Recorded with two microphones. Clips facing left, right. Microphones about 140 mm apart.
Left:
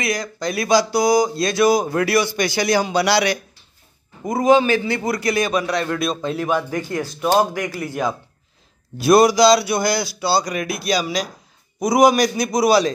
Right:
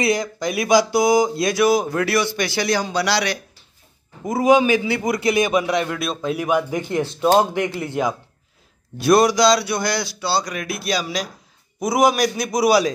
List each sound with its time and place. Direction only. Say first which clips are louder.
0.0 s speech: right 3 dB; 25° right (ahead or behind); by 3.3 s 5° left (ahead or behind)
4.2 s speech: even; 5° right (ahead or behind); by 5.9 s 20° right (ahead or behind)
5.9 s speech: left 2 dB; 5° right (ahead or behind); by 8.1 s 25° right (ahead or behind)
8.9 s speech: left 2 dB; 5° left (ahead or behind)